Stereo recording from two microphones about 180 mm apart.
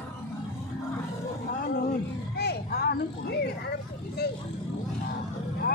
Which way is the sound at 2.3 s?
60° left (ahead or behind).